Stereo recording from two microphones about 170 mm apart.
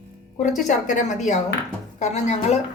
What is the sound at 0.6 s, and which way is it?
A woman's voice, 45° left (ahead or behind).